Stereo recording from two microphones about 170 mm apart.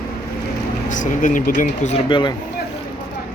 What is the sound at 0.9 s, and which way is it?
Speech, 50° left (ahead or behind).